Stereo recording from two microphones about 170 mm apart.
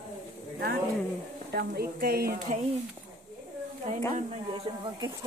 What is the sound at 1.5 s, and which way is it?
Speech, 65° right (ahead or behind).